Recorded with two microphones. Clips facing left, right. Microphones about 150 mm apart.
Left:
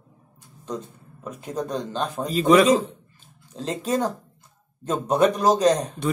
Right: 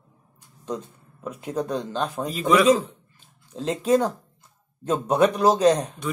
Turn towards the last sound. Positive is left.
turn(degrees=-10)  # may be behind; listen again after turning